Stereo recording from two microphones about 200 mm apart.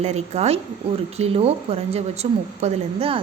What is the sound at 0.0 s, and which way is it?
Speech, 30° right (ahead or behind).